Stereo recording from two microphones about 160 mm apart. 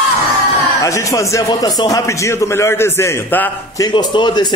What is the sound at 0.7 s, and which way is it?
Speech, 20° left (ahead or behind).